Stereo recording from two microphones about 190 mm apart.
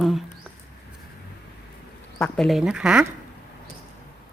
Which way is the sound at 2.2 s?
Centre (ahead or behind).